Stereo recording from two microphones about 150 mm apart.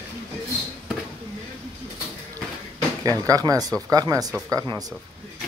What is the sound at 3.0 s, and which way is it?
Speech, 25° right (ahead or behind).